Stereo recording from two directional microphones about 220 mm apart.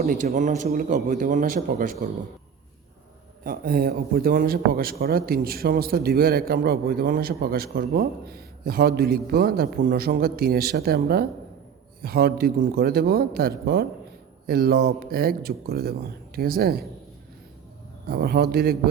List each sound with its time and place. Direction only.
0.0 s a man's voice: 40° right (ahead or behind)
3.4 s speech: 40° right (ahead or behind)
18.1 s speech: 45° right (ahead or behind)